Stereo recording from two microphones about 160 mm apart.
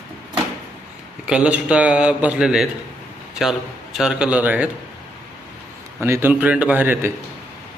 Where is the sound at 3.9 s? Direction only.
5° right (ahead or behind).